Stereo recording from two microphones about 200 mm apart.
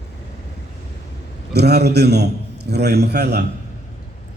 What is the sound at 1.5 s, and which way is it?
A man's voice, 55° right (ahead or behind).